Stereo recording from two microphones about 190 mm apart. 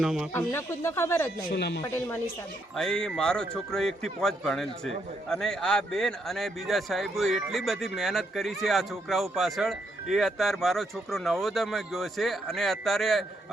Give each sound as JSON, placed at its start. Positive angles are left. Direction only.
{"t": 0.0, "sound": "a man's voice", "side_deg": -5}
{"t": 0.3, "sound": "speech", "side_deg": 15}
{"t": 1.5, "sound": "speech", "side_deg": 60}
{"t": 1.8, "sound": "a man's voice", "side_deg": 10}